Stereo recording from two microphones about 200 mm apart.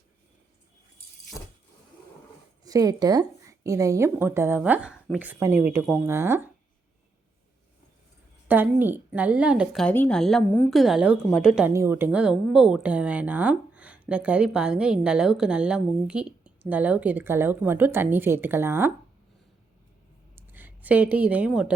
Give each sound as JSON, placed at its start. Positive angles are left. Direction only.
{"t": 2.6, "sound": "a woman's voice", "side_deg": -15}
{"t": 6.1, "sound": "a woman's voice", "side_deg": -10}
{"t": 8.4, "sound": "a woman's voice", "side_deg": -10}
{"t": 9.8, "sound": "a woman's voice", "side_deg": 10}
{"t": 20.3, "sound": "a sound", "side_deg": -10}